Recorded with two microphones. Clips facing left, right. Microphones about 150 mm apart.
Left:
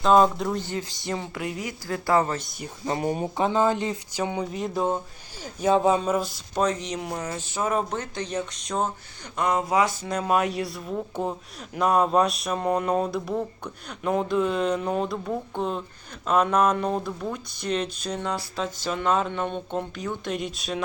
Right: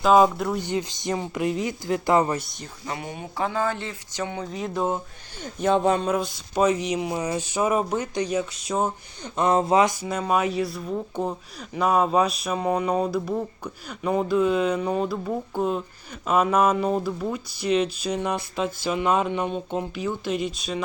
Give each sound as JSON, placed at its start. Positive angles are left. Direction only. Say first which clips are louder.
{"t": 0.0, "sound": "speech", "louder": "right 1 dB", "side_deg": -5}
{"t": 0.6, "sound": "a woman's voice", "louder": "right 4 dB", "side_deg": -20}
{"t": 2.8, "sound": "speech", "louder": "left 7 dB", "side_deg": 35}
{"t": 3.3, "sound": "speech", "louder": "left 2 dB", "side_deg": 20}
{"t": 4.5, "sound": "speech", "louder": "right 3 dB", "side_deg": 0}
{"t": 9.3, "sound": "a woman's voice", "louder": "right 4 dB", "side_deg": -25}
{"t": 9.9, "sound": "speech", "louder": "even", "side_deg": -5}